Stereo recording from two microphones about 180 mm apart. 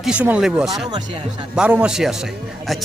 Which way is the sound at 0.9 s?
25° right (ahead or behind).